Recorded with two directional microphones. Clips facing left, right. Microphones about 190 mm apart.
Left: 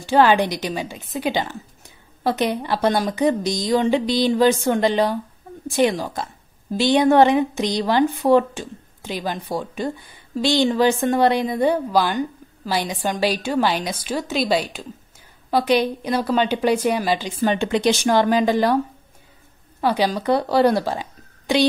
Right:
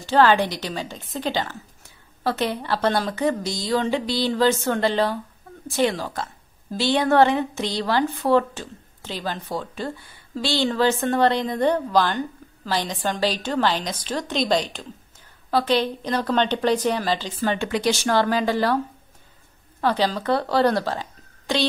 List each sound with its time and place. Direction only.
0.0 s a woman's voice: 15° left (ahead or behind)
19.8 s speech: 10° left (ahead or behind)